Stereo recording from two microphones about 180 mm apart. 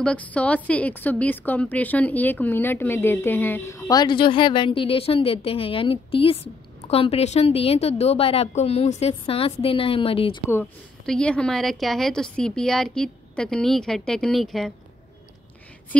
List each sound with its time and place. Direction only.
0.0 s a woman's voice: 10° left (ahead or behind); by 10.4 s 30° left (ahead or behind)
10.5 s a woman's voice: 5° left (ahead or behind)